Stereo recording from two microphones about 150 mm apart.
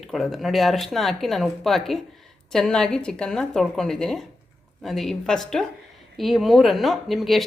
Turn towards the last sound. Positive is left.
turn(degrees=0)  # may be behind; listen again after turning